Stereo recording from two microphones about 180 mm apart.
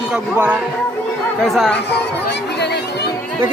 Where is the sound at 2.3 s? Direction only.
70° left (ahead or behind).